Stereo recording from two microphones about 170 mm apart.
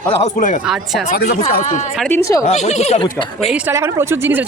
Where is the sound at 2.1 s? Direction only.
15° left (ahead or behind).